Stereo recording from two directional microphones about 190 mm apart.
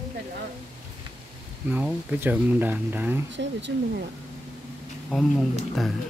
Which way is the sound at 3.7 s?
65° right (ahead or behind).